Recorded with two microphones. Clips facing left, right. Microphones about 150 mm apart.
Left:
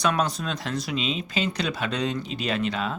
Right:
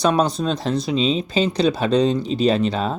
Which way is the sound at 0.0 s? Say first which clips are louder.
Right 7 dB; 30° right (ahead or behind).